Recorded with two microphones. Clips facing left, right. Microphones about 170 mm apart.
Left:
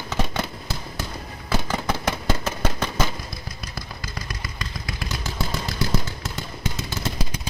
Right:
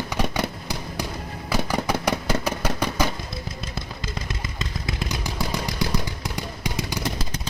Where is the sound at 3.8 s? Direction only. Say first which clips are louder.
Right 1 dB; 25° right (ahead or behind).